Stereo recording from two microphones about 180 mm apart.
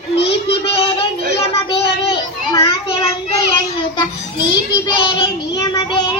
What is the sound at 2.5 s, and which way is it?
Child singing, 35° left (ahead or behind).